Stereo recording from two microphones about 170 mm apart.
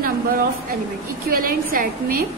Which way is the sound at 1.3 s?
60° right (ahead or behind).